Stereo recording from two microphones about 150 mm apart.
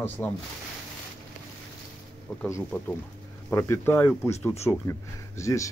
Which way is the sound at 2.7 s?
15° left (ahead or behind).